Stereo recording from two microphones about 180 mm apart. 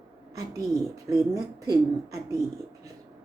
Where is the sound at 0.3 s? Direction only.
20° right (ahead or behind).